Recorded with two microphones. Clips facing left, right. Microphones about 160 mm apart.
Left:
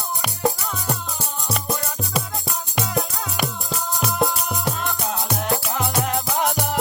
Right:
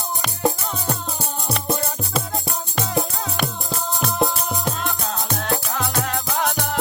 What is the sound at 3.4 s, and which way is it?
Music, 5° left (ahead or behind).